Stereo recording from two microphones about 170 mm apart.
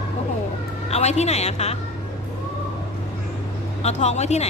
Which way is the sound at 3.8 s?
40° left (ahead or behind).